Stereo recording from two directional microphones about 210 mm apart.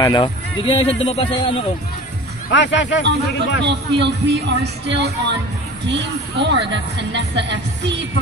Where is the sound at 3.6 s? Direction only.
55° right (ahead or behind).